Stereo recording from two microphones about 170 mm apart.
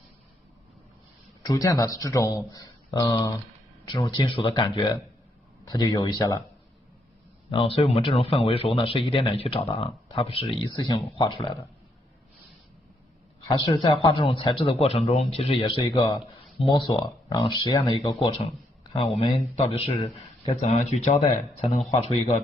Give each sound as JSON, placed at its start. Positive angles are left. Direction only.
{"t": 1.4, "sound": "speech", "side_deg": 20}
{"t": 7.4, "sound": "speech", "side_deg": 35}
{"t": 13.5, "sound": "speech", "side_deg": 25}
{"t": 15.8, "sound": "speech", "side_deg": 25}
{"t": 18.9, "sound": "speech", "side_deg": 35}
{"t": 20.6, "sound": "speech", "side_deg": 40}